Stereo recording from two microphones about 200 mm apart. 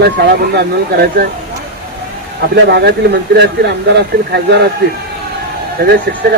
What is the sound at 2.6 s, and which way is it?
Speech, 60° right (ahead or behind).